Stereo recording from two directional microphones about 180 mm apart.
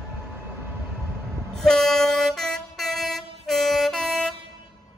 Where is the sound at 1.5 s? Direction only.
5° left (ahead or behind).